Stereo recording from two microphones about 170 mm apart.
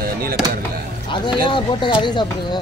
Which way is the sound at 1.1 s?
30° left (ahead or behind).